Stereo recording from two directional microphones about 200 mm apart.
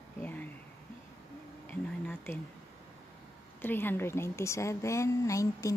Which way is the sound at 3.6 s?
10° left (ahead or behind).